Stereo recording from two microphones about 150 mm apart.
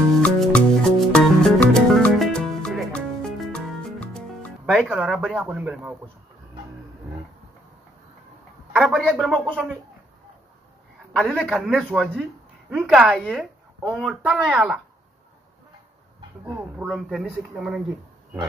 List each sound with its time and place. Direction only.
0.2 s music: 5° left (ahead or behind)
8.7 s speech: centre (ahead or behind)
11.1 s speech: 5° left (ahead or behind)
13.3 s a sound: 10° right (ahead or behind)
13.9 s speech: centre (ahead or behind)
16.4 s speech: 10° right (ahead or behind)
16.8 s speech: centre (ahead or behind)